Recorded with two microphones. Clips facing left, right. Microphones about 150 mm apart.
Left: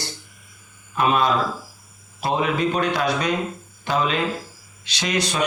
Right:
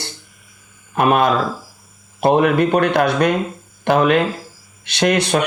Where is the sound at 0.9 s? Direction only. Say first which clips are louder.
Right 4 dB; 60° right (ahead or behind).